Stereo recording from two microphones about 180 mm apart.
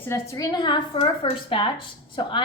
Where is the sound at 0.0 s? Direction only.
15° left (ahead or behind).